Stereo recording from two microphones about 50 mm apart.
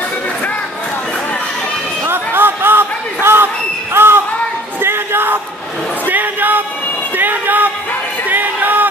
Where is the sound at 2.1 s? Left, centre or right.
Right.